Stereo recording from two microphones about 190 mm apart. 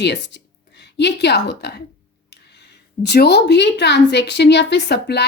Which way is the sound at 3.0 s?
60° left (ahead or behind).